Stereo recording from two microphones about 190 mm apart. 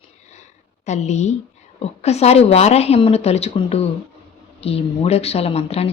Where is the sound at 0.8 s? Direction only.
35° left (ahead or behind).